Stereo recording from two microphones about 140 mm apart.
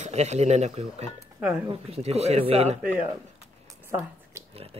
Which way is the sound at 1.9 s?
50° right (ahead or behind).